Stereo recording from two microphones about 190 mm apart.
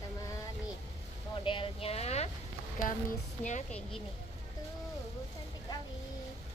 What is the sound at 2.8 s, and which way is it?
Speech, 45° left (ahead or behind).